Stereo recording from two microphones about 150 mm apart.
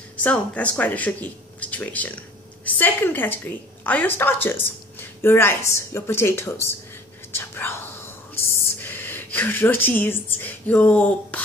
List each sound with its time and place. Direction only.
0.2 s a woman's voice: 10° left (ahead or behind)
7.3 s whispering: 15° left (ahead or behind)
8.4 s a woman's voice: 15° left (ahead or behind)